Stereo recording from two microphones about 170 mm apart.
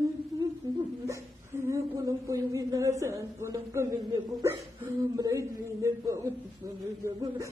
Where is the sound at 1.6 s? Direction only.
20° right (ahead or behind).